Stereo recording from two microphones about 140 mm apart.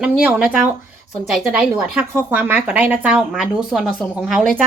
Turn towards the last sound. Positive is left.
turn(degrees=0)  # may be behind; listen again after turning